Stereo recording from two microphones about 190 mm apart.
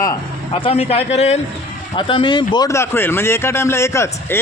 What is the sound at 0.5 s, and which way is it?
A man's voice, 30° left (ahead or behind).